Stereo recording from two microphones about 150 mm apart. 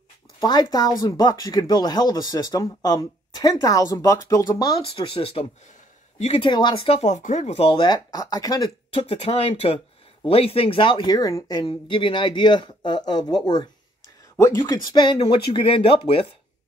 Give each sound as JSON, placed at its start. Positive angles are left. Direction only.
{"t": 0.4, "sound": "speech", "side_deg": 25}
{"t": 4.8, "sound": "speech", "side_deg": 35}
{"t": 6.5, "sound": "speech", "side_deg": 35}
{"t": 8.9, "sound": "speech", "side_deg": 40}
{"t": 14.4, "sound": "speech", "side_deg": 25}